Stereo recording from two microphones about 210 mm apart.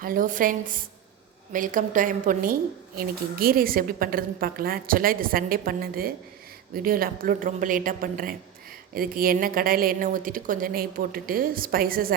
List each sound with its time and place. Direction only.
0.0 s a woman's voice: 40° right (ahead or behind)